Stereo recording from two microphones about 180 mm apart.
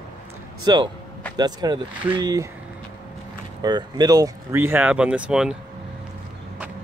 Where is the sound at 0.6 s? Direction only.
25° right (ahead or behind).